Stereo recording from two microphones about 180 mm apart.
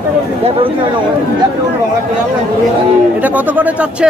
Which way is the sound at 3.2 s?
10° right (ahead or behind).